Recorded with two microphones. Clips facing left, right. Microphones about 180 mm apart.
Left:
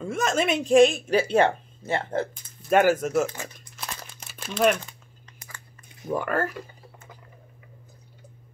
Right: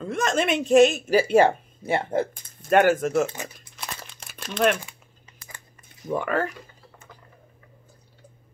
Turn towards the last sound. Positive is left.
turn(degrees=0)  # may be behind; listen again after turning